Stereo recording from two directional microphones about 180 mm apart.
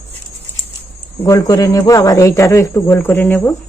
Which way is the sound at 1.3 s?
20° left (ahead or behind).